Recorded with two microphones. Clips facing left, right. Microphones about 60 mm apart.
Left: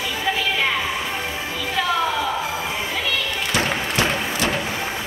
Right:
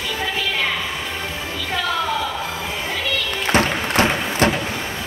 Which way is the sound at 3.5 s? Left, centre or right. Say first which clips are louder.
Right 5 dB; right.